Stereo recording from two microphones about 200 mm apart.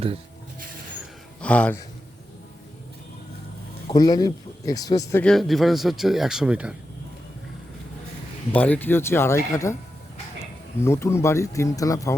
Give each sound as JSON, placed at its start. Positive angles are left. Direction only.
{"t": 1.4, "sound": "speech", "side_deg": 5}
{"t": 3.8, "sound": "speech", "side_deg": 20}
{"t": 5.2, "sound": "speech", "side_deg": 0}
{"t": 8.5, "sound": "speech", "side_deg": 10}
{"t": 10.8, "sound": "speech", "side_deg": 15}